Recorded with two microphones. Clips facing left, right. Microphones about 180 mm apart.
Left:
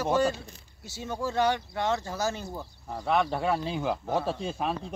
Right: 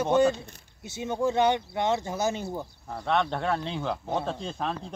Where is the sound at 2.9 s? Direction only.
5° left (ahead or behind).